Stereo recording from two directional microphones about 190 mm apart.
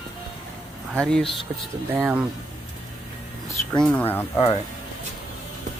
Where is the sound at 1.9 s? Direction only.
10° right (ahead or behind).